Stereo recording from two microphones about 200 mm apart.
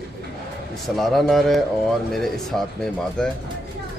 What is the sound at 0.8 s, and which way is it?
Speech, centre (ahead or behind).